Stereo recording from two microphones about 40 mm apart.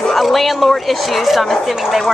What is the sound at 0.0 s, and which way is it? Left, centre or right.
A woman's voice, centre.